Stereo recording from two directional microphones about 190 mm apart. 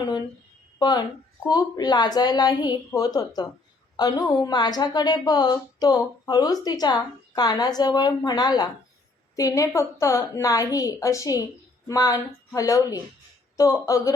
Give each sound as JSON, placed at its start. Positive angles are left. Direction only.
{"t": 0.8, "sound": "a woman's voice", "side_deg": 20}